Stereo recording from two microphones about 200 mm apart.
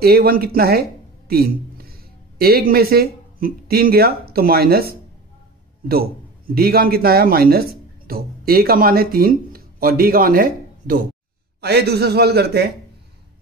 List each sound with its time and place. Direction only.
0.0 s a man's voice: 50° right (ahead or behind)